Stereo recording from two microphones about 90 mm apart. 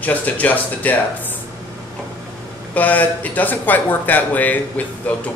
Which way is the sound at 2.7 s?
20° left (ahead or behind).